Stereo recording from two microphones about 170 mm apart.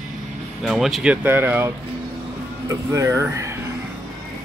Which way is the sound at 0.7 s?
Centre (ahead or behind).